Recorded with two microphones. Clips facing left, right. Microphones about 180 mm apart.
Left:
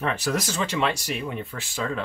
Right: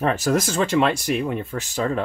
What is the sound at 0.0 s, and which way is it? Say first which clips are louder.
Speech: right 6 dB; 45° right (ahead or behind).